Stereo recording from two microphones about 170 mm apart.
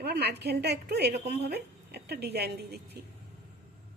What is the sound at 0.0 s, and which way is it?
A woman's voice, 75° right (ahead or behind).